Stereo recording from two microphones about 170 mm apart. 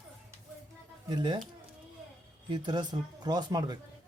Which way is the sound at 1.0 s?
25° right (ahead or behind).